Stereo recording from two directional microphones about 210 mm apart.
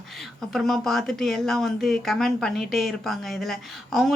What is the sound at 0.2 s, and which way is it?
Speech, centre (ahead or behind).